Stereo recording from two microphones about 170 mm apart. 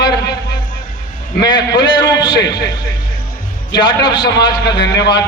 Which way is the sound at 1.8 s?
25° left (ahead or behind).